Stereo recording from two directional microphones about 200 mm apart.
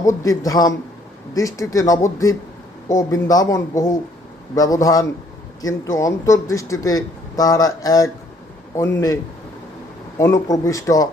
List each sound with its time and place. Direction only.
0.2 s speech: 15° left (ahead or behind)
10.2 s speech: 15° left (ahead or behind)